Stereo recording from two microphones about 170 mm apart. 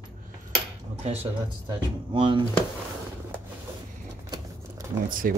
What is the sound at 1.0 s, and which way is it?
Speech, 35° right (ahead or behind).